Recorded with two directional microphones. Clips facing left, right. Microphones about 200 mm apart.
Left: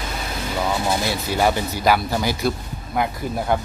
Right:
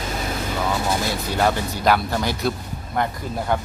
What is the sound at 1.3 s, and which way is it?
Speech, 5° left (ahead or behind).